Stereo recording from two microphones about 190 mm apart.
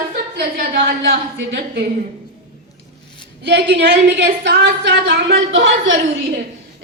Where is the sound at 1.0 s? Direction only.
70° right (ahead or behind).